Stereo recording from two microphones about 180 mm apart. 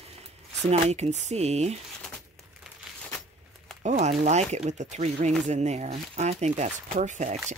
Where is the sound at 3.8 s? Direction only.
40° right (ahead or behind).